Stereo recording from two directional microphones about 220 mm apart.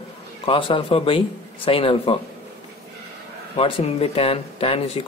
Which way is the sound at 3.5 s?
25° left (ahead or behind).